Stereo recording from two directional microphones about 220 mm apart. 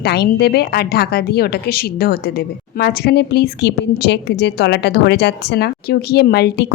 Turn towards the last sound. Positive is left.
turn(degrees=45)  # may be behind; listen again after turning